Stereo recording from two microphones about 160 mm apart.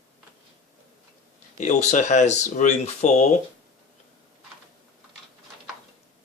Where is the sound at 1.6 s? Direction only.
50° left (ahead or behind).